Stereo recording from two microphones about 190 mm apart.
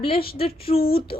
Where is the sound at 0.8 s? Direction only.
55° left (ahead or behind).